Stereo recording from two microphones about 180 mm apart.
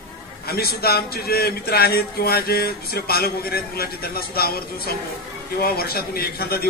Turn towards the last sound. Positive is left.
turn(degrees=60)  # may be behind; listen again after turning